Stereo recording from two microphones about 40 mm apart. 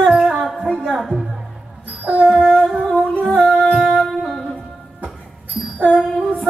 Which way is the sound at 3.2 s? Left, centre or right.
Left.